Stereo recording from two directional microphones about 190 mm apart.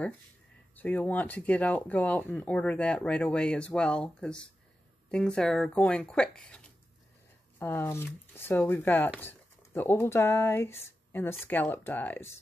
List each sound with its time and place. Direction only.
0.7 s speech: 10° left (ahead or behind)